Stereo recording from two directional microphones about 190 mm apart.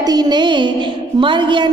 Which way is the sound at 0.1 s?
20° right (ahead or behind).